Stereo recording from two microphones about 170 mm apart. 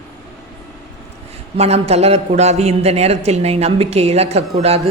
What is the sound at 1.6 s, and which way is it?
A man's voice, 40° right (ahead or behind).